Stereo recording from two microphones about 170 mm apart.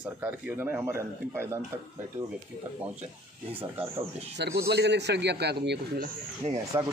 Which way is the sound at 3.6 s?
10° right (ahead or behind).